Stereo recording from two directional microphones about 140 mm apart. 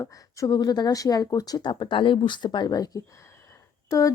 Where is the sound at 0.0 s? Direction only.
25° left (ahead or behind).